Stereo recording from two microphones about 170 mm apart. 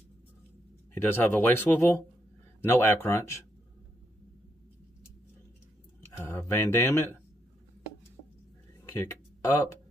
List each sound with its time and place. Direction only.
1.0 s speech: 15° left (ahead or behind)
6.1 s speech: 15° left (ahead or behind)
9.0 s speech: 20° left (ahead or behind)